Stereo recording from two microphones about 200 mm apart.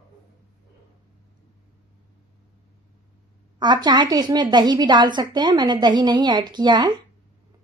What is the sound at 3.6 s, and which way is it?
A woman's voice, 20° right (ahead or behind).